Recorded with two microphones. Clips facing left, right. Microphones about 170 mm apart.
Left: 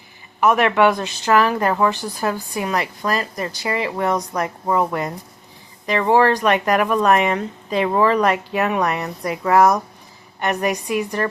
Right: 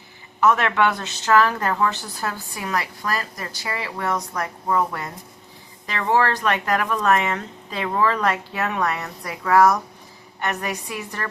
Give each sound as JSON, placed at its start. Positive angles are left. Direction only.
{"t": 0.3, "sound": "a woman's voice", "side_deg": 15}